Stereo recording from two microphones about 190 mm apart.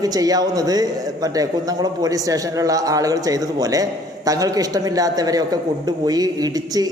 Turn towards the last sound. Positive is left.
turn(degrees=-20)  # may be behind; listen again after turning